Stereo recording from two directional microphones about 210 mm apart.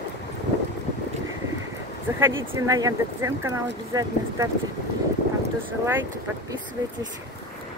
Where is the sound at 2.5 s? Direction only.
15° right (ahead or behind).